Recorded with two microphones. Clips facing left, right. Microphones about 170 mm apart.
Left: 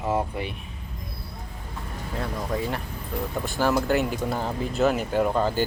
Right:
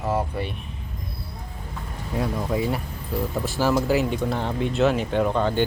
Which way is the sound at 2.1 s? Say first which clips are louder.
Right 4 dB; 10° right (ahead or behind).